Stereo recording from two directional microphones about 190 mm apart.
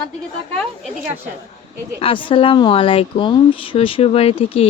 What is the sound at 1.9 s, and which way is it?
Speech, 30° left (ahead or behind).